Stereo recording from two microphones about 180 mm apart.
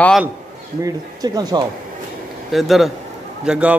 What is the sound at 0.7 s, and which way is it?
Speech, 20° right (ahead or behind).